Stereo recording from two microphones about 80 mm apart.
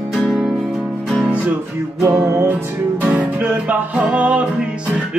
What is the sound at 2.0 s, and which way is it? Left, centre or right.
Music, right.